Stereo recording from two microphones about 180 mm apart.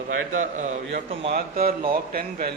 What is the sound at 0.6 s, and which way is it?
Speech, 45° right (ahead or behind).